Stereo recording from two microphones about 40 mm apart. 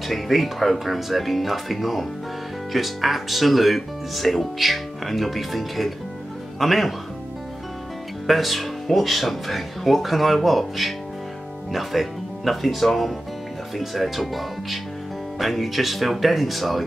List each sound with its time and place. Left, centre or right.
0.1 s speech: centre
8.3 s speech: centre